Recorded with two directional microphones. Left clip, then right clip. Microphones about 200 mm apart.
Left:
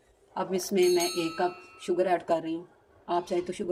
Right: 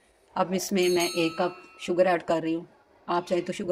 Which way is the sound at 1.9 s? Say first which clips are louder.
Right 3 dB; 35° right (ahead or behind).